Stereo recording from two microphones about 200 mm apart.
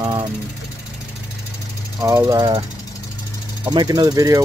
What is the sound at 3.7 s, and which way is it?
Speech, 20° right (ahead or behind).